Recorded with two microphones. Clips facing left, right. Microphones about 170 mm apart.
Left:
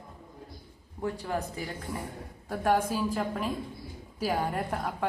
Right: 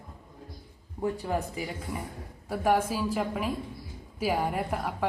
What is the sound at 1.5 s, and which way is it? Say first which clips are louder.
A woman's voice: right 1 dB; 15° right (ahead or behind).